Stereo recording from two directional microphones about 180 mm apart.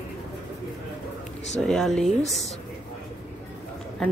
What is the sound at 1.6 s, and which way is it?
Speech, centre (ahead or behind).